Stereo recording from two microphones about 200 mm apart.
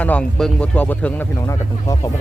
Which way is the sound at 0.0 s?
5° left (ahead or behind).